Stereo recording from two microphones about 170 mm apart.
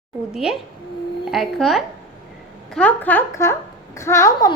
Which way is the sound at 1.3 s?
Centre (ahead or behind).